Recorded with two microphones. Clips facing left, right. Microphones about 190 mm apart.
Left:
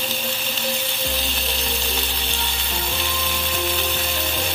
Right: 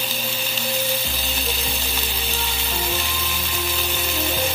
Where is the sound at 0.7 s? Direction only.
Centre (ahead or behind).